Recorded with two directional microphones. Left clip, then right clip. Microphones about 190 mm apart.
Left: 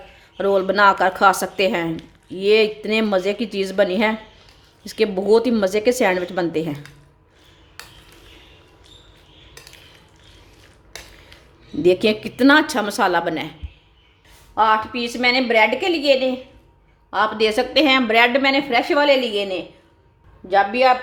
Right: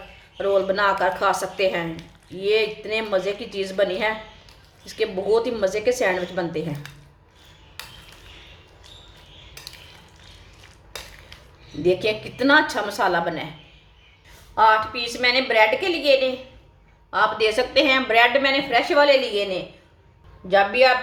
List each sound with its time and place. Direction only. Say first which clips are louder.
0.3 s a woman's voice: left 3 dB; 50° left (ahead or behind)
11.8 s a woman's voice: left 4 dB; 50° left (ahead or behind)
14.5 s a woman's voice: even; 40° left (ahead or behind)